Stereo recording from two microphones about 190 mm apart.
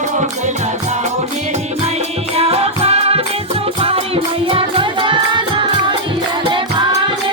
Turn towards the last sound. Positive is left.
turn(degrees=-25)  # may be behind; listen again after turning